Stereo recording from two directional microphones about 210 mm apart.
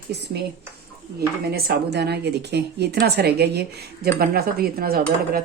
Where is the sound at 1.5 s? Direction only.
50° right (ahead or behind).